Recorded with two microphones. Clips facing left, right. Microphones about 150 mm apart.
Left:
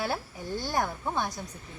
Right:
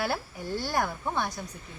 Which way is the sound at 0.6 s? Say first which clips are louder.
Even; 15° left (ahead or behind).